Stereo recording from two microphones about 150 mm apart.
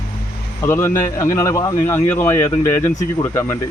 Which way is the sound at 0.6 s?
15° left (ahead or behind).